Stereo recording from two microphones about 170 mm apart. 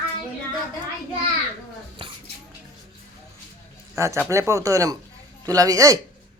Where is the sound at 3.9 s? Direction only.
15° right (ahead or behind).